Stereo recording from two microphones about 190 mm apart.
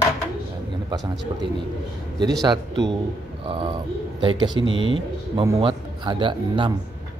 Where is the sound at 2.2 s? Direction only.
20° right (ahead or behind).